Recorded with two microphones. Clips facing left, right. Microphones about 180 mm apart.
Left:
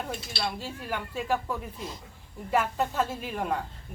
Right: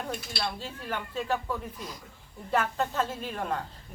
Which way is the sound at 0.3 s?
10° left (ahead or behind).